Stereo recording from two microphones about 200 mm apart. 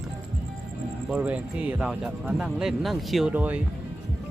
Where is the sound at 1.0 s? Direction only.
5° right (ahead or behind).